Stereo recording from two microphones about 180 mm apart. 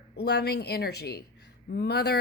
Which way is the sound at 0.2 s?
65° left (ahead or behind).